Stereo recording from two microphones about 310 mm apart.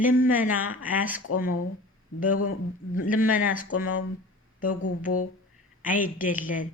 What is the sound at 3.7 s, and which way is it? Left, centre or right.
Speech, left.